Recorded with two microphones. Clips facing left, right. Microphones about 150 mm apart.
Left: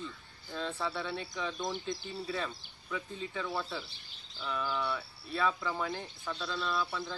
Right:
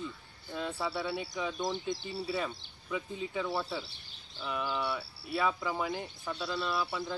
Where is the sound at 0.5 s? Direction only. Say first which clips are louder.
Right 1 dB; 10° right (ahead or behind).